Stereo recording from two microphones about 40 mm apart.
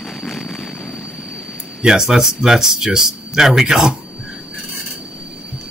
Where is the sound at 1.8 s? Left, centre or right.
Centre.